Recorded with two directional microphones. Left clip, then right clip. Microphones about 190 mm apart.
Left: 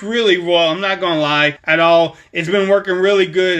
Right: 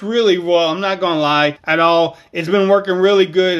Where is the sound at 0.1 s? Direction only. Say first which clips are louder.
Even; 20° right (ahead or behind).